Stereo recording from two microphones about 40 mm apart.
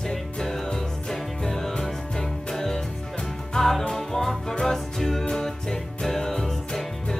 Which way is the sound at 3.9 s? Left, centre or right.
Centre.